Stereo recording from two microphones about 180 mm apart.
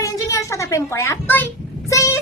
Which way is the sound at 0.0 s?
15° left (ahead or behind).